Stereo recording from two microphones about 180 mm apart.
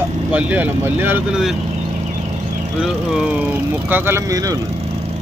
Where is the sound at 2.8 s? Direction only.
5° right (ahead or behind).